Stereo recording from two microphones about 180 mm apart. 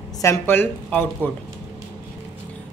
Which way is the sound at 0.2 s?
15° left (ahead or behind).